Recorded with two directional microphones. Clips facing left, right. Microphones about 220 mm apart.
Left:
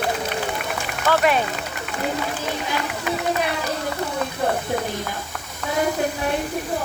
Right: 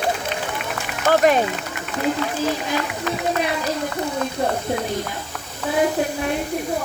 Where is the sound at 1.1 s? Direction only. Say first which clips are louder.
Right 3 dB; 45° right (ahead or behind).